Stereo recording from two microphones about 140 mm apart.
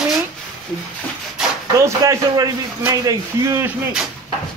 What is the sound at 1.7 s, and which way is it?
A man's voice, 20° right (ahead or behind).